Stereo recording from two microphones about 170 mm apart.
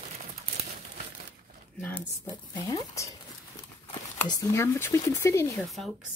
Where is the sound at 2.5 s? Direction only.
20° left (ahead or behind).